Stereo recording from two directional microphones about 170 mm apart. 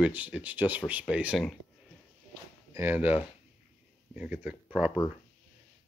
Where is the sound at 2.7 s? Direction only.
10° right (ahead or behind).